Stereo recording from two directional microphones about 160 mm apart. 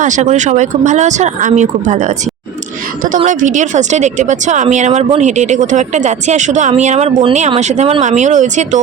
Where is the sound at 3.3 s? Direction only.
50° right (ahead or behind).